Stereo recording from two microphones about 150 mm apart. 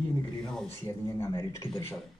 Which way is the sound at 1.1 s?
15° left (ahead or behind).